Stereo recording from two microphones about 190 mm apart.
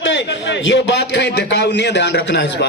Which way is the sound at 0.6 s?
65° left (ahead or behind).